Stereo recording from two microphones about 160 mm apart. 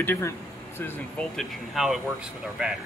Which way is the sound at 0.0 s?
15° left (ahead or behind).